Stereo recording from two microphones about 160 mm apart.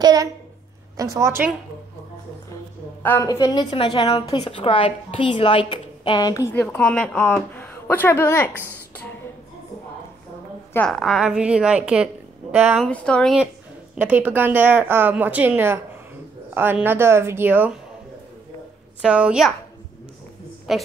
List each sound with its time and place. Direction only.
0.0 s a sound: 25° right (ahead or behind)
0.9 s speech: 20° right (ahead or behind)
3.0 s a woman's voice: 15° left (ahead or behind)
3.3 s a woman's voice: 30° left (ahead or behind); by 8.6 s 15° left (ahead or behind)
10.9 s a woman's voice: centre (ahead or behind)
12.8 s speech: 5° left (ahead or behind)
13.9 s a woman's voice: 10° right (ahead or behind)
18.9 s speech: 5° right (ahead or behind)
20.7 s speech: centre (ahead or behind)